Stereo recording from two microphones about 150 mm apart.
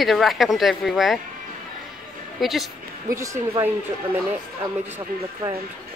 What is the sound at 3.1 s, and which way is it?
Speech, 20° right (ahead or behind).